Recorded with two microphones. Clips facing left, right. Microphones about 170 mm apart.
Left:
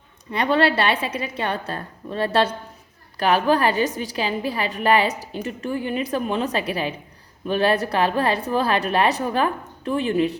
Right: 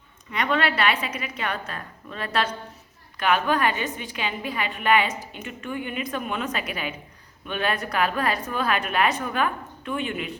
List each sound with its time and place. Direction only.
0.3 s a woman's voice: 30° left (ahead or behind)